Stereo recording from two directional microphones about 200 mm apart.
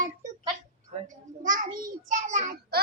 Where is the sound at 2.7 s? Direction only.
50° right (ahead or behind).